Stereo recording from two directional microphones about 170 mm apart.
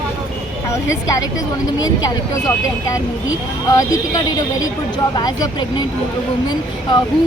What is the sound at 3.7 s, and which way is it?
Speech, 20° left (ahead or behind).